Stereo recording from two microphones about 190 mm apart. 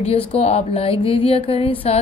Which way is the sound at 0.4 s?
30° left (ahead or behind).